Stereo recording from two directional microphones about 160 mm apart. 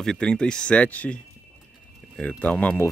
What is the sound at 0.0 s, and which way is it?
Speech, 5° left (ahead or behind).